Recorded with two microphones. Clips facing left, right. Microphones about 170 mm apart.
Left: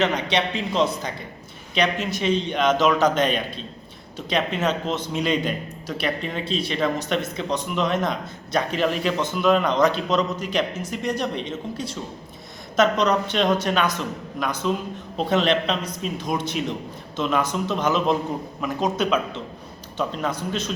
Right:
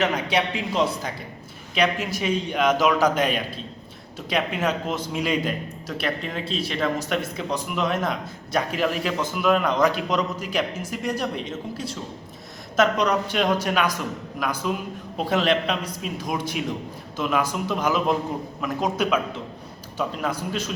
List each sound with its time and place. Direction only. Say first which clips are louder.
0.0 s a man's voice: left 1 dB; 5° right (ahead or behind)